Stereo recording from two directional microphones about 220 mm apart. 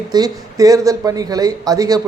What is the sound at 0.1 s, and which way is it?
Speech, 15° right (ahead or behind).